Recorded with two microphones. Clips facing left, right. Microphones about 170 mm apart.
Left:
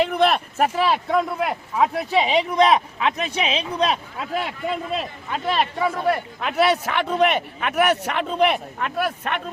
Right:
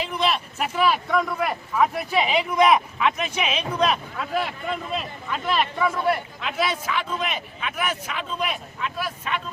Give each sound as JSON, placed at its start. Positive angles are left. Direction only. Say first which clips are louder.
{"t": 0.0, "sound": "a sound", "louder": "left 6 dB", "side_deg": 55}
{"t": 0.8, "sound": "speech", "louder": "right 2 dB", "side_deg": 30}
{"t": 5.3, "sound": "speech", "louder": "left 1 dB", "side_deg": 30}
{"t": 6.4, "sound": "speech", "louder": "left 6 dB", "side_deg": 65}